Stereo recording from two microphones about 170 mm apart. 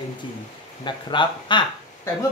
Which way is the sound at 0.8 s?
25° left (ahead or behind).